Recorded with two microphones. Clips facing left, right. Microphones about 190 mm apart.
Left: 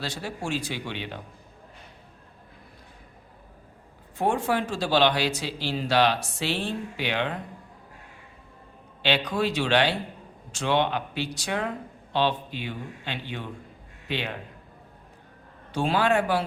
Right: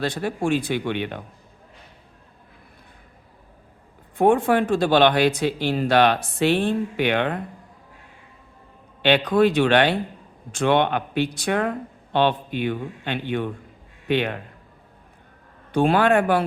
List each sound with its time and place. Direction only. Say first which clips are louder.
0.0 s speech: right 9 dB; 55° right (ahead or behind)
4.2 s speech: right 7 dB; 55° right (ahead or behind)
9.0 s speech: right 8 dB; 55° right (ahead or behind)
15.7 s speech: right 6 dB; 55° right (ahead or behind)